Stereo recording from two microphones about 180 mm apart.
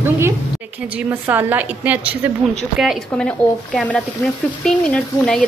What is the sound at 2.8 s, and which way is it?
A woman's voice, centre (ahead or behind).